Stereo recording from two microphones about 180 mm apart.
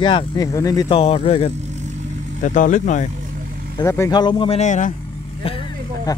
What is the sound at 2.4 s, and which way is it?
Speech, 45° left (ahead or behind).